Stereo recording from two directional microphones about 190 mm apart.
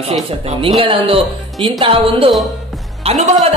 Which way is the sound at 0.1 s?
30° right (ahead or behind).